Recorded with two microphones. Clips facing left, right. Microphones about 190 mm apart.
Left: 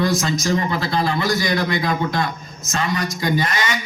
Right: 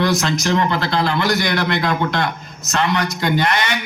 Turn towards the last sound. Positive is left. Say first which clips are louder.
# right 3 dB
turn(degrees=-65)  # may be behind; listen again after turning